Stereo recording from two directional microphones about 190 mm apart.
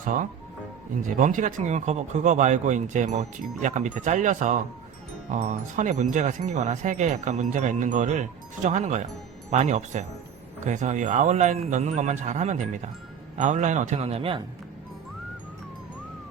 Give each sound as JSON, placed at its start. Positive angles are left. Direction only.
{"t": 0.0, "sound": "speech", "side_deg": -45}